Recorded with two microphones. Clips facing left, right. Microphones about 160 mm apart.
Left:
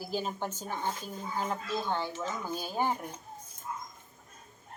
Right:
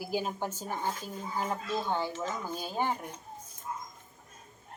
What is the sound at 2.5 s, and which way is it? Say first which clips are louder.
Speech: left 3 dB; 5° left (ahead or behind).